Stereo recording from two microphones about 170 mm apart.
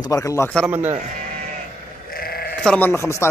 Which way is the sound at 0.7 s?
10° right (ahead or behind).